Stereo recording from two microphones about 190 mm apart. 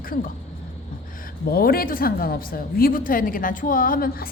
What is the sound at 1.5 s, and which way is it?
A woman's voice, 50° left (ahead or behind).